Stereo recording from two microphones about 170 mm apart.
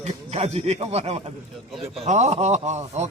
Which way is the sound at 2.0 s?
40° right (ahead or behind).